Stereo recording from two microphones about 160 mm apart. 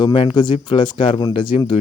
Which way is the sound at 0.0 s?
30° left (ahead or behind).